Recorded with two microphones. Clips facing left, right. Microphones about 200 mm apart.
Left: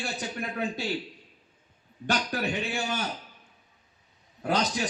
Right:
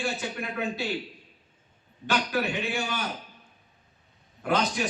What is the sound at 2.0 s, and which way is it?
A man's voice, 40° left (ahead or behind).